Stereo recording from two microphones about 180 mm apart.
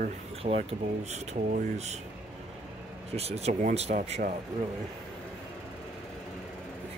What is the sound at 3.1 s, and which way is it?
Speech, 35° right (ahead or behind).